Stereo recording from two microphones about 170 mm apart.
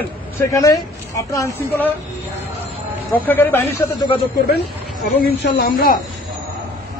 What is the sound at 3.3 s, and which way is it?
Speech, 10° left (ahead or behind).